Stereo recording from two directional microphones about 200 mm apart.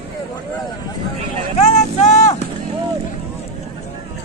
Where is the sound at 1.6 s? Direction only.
35° left (ahead or behind).